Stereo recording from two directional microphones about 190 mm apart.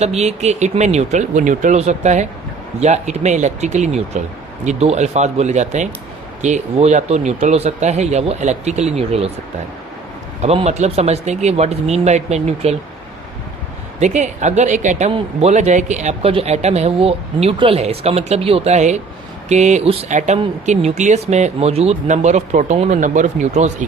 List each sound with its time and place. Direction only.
0.0 s speech: 35° right (ahead or behind)
10.4 s speech: 35° right (ahead or behind)
14.0 s speech: 40° right (ahead or behind)